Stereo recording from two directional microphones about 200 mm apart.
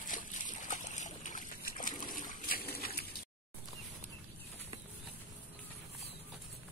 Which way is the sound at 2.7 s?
50° left (ahead or behind).